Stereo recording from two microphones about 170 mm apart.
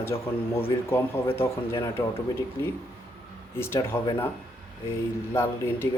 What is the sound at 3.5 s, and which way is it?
Speech, 15° left (ahead or behind).